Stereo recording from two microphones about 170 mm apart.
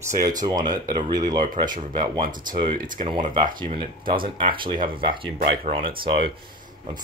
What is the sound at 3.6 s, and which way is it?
Speech, 30° right (ahead or behind).